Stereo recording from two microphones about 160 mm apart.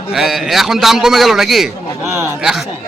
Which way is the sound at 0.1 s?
Centre (ahead or behind).